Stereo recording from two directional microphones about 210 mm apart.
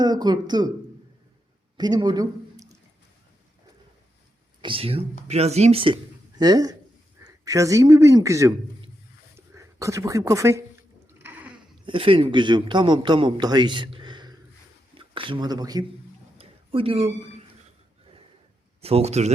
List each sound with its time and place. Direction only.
0.0 s a man's voice: 20° right (ahead or behind)
1.8 s speech: 20° right (ahead or behind)
4.6 s a man's voice: 25° right (ahead or behind)
9.6 s speech: 15° right (ahead or behind)
11.2 s a sound: 10° right (ahead or behind)
11.9 s a man's voice: 25° right (ahead or behind)
16.4 s a sound: 25° right (ahead or behind)
18.8 s a man's voice: 30° right (ahead or behind)